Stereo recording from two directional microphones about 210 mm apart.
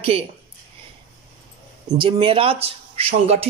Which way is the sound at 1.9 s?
25° right (ahead or behind).